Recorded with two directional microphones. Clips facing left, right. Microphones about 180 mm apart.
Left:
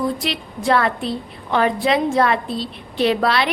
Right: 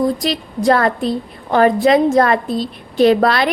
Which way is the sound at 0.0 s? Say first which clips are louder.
Right 5 dB; 40° right (ahead or behind).